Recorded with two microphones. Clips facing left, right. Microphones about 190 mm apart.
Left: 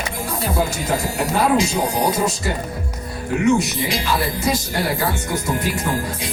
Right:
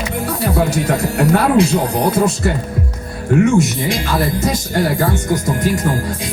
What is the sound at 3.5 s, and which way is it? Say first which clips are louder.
Speech: right 5 dB; 45° right (ahead or behind).